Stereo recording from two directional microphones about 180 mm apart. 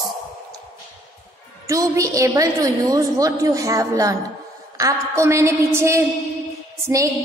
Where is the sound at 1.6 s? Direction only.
20° right (ahead or behind).